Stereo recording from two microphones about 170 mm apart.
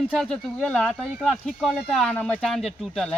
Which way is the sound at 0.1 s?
Centre (ahead or behind).